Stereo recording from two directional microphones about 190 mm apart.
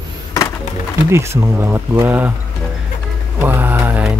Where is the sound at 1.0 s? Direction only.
15° right (ahead or behind).